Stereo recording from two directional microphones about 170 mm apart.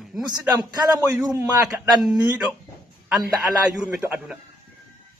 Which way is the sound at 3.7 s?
5° right (ahead or behind).